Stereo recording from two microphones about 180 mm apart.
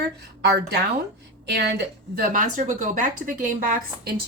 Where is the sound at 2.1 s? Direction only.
50° right (ahead or behind).